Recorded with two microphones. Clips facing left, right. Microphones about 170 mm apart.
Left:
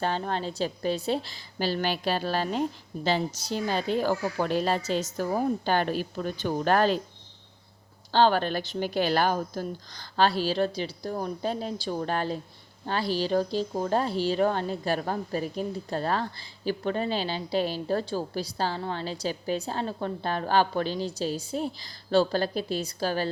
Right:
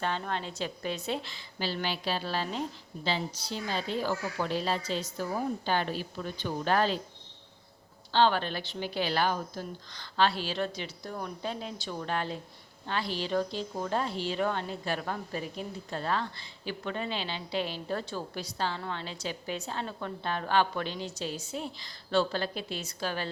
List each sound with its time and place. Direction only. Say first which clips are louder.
0.0 s a woman's voice: left 4 dB; 35° left (ahead or behind)
8.1 s a woman's voice: left 4 dB; 45° left (ahead or behind)